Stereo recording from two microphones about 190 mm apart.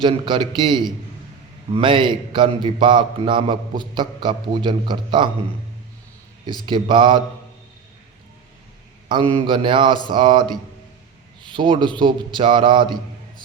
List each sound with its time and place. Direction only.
0.0 s a man's voice: 25° right (ahead or behind)
6.7 s a man's voice: 25° right (ahead or behind)
9.0 s a man's voice: 25° right (ahead or behind)